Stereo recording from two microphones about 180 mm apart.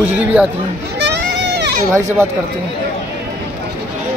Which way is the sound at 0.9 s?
70° right (ahead or behind).